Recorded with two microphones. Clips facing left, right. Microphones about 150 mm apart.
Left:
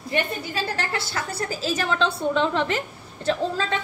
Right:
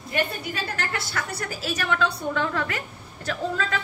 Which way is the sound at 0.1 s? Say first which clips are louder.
Left 1 dB; 30° left (ahead or behind).